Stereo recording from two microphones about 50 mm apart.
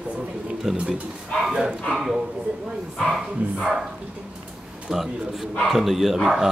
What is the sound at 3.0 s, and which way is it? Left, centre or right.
Speech, centre.